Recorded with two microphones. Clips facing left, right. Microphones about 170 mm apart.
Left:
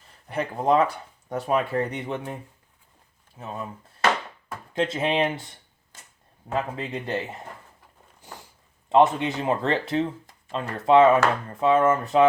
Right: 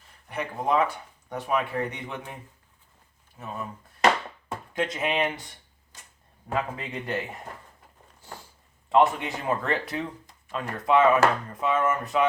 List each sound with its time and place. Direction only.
0.3 s speech: 35° left (ahead or behind)
4.7 s speech: 30° left (ahead or behind)
6.5 s speech: 25° left (ahead or behind)
8.9 s speech: 25° left (ahead or behind)